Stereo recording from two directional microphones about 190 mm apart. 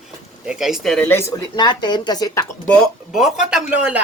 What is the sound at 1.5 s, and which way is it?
Speech, 20° left (ahead or behind).